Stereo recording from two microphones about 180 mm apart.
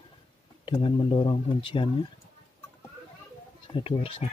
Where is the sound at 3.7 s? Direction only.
30° left (ahead or behind).